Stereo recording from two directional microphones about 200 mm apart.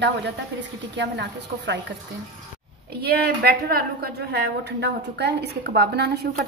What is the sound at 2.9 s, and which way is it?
A woman's voice, 50° right (ahead or behind).